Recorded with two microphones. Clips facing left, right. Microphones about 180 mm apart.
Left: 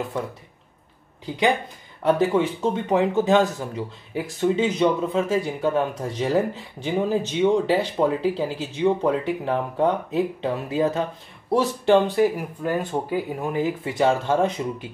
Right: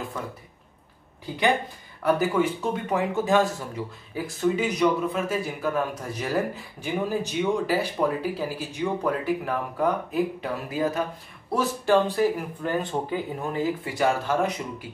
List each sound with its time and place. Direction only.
1.2 s speech: 20° left (ahead or behind)
12.4 s speech: 10° left (ahead or behind); by 14.9 s 25° left (ahead or behind)